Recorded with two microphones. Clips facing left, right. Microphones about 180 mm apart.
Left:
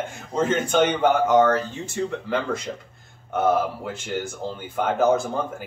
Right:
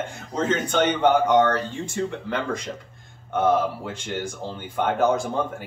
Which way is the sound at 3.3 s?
5° left (ahead or behind).